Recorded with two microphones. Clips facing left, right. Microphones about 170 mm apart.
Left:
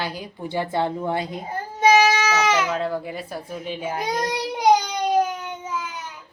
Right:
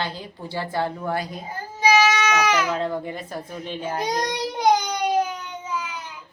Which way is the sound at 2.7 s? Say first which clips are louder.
Even; 5° left (ahead or behind).